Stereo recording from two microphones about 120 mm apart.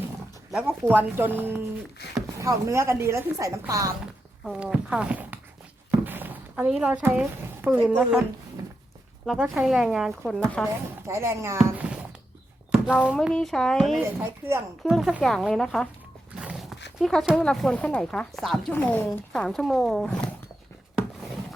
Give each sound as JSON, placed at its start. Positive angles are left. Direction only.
{"t": 0.5, "sound": "a woman's voice", "side_deg": -5}
{"t": 4.0, "sound": "speech", "side_deg": -5}
{"t": 6.1, "sound": "a sound", "side_deg": -15}
{"t": 6.7, "sound": "a woman's voice", "side_deg": -10}
{"t": 9.2, "sound": "speech", "side_deg": -5}
{"t": 11.1, "sound": "speech", "side_deg": -25}
{"t": 12.7, "sound": "speech", "side_deg": -5}
{"t": 13.1, "sound": "speech", "side_deg": 5}
{"t": 14.2, "sound": "speech", "side_deg": -20}
{"t": 14.8, "sound": "speech", "side_deg": -5}
{"t": 16.3, "sound": "dog", "side_deg": -10}
{"t": 17.3, "sound": "speech", "side_deg": 5}
{"t": 18.7, "sound": "speech", "side_deg": 15}